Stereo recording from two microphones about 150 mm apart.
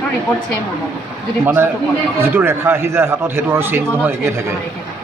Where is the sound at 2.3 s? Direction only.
15° right (ahead or behind).